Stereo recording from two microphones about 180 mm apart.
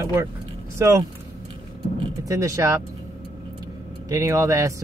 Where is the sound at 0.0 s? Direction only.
15° right (ahead or behind).